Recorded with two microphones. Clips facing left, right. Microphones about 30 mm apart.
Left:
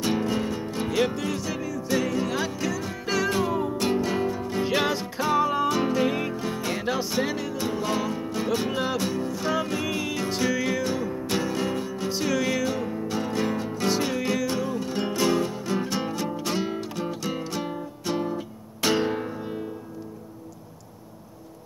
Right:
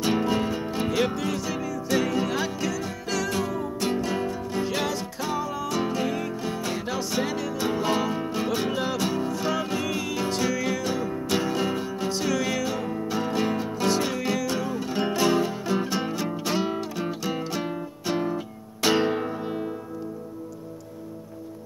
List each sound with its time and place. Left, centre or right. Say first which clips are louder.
0.0 s music: right 2 dB; centre
3.1 s music: left 3 dB; centre
4.6 s music: left 5 dB; left
5.4 s music: left 7 dB; left
5.7 s music: left 3 dB; centre
6.0 s music: left 2 dB; left
6.3 s music: left 1 dB; centre
7.6 s music: right 3 dB; centre
8.5 s music: left 2 dB; centre
12.1 s music: left 1 dB; centre
13.8 s music: even; centre